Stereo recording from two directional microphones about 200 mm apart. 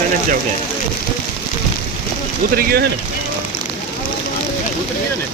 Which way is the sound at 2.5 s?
55° right (ahead or behind).